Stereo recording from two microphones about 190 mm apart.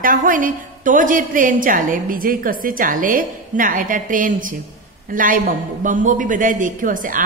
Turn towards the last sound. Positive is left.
turn(degrees=-45)  # may be behind; listen again after turning